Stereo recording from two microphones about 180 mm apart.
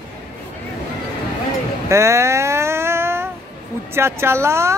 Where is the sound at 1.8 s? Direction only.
15° right (ahead or behind).